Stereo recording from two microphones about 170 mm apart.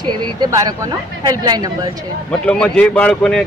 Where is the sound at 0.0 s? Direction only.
25° right (ahead or behind).